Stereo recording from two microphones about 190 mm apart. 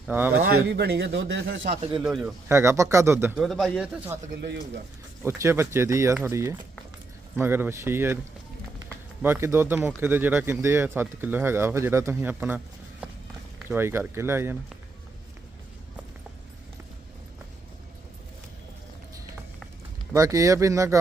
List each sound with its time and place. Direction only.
0.1 s speech: 10° right (ahead or behind)
0.7 s speech: 60° right (ahead or behind); by 1.6 s 80° right
1.7 s speech: 30° right (ahead or behind)
2.0 s speech: 5° right (ahead or behind)
2.5 s speech: 15° right (ahead or behind)
3.4 s speech: centre (ahead or behind)
4.3 s speech: 60° right (ahead or behind)
5.2 s speech: 15° right (ahead or behind)
9.2 s speech: 10° right (ahead or behind)
20.1 s speech: 20° right (ahead or behind)